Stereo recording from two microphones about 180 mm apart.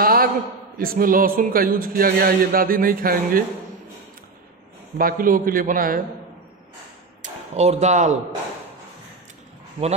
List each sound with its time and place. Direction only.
0.0 s a sound: 55° right (ahead or behind)
0.7 s a man's voice: 55° right (ahead or behind)
4.9 s a man's voice: 50° right (ahead or behind)
7.2 s speech: 35° right (ahead or behind)